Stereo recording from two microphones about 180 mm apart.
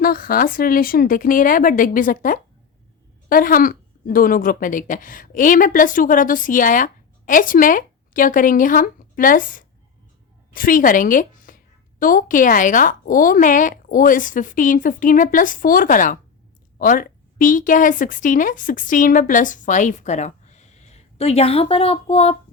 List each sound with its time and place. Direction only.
0.0 s a woman's voice: 55° left (ahead or behind); by 22.4 s 35° left (ahead or behind)